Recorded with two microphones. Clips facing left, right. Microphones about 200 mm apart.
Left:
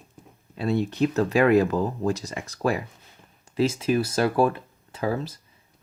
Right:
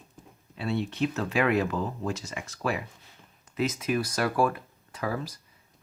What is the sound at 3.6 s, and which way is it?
A man's voice, 30° left (ahead or behind).